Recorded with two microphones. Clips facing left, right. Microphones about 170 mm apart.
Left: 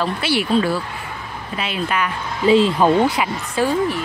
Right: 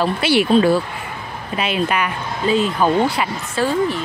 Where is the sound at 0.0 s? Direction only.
20° right (ahead or behind).